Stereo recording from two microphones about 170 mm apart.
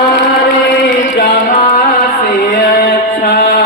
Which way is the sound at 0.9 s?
55° left (ahead or behind).